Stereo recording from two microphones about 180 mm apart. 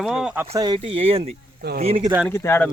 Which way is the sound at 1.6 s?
60° right (ahead or behind).